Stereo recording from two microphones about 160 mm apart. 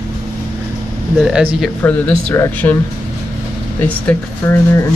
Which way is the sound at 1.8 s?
10° left (ahead or behind).